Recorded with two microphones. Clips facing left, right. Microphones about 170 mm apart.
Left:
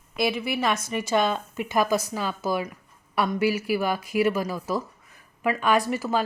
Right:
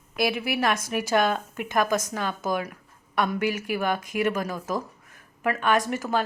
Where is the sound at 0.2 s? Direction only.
5° right (ahead or behind).